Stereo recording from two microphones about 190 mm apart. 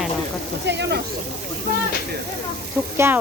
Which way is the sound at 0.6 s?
65° right (ahead or behind).